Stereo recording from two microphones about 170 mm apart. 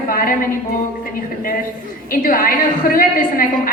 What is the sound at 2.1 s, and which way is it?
A woman's voice, 55° left (ahead or behind).